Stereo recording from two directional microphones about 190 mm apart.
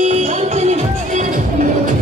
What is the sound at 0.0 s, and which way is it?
Music, 35° right (ahead or behind).